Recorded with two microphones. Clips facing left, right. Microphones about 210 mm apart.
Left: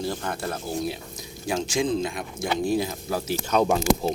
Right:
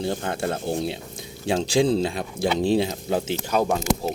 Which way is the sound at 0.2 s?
25° right (ahead or behind).